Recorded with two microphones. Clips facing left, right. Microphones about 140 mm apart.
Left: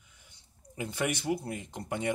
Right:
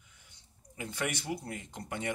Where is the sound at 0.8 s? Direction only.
25° left (ahead or behind).